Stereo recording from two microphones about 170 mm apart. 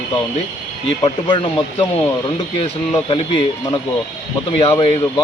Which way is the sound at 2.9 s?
30° left (ahead or behind).